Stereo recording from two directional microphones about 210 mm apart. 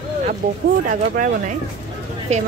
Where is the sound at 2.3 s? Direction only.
30° right (ahead or behind).